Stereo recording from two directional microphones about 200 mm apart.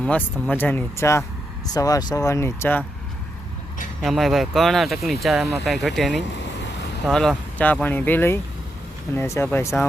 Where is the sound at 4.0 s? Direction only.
Centre (ahead or behind).